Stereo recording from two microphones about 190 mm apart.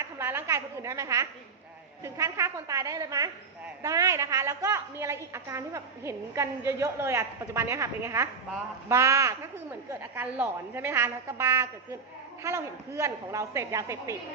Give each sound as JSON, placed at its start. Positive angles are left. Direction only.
{"t": 0.0, "sound": "a woman's voice", "side_deg": -10}